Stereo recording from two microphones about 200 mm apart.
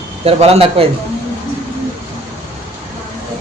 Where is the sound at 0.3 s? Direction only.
30° right (ahead or behind).